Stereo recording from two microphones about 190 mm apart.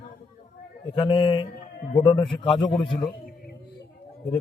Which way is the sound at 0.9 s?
25° left (ahead or behind).